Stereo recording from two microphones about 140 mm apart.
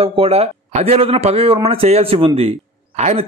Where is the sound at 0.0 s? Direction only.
45° right (ahead or behind).